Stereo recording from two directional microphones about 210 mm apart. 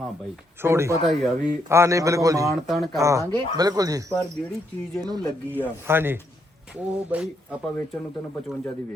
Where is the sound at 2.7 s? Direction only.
Centre (ahead or behind).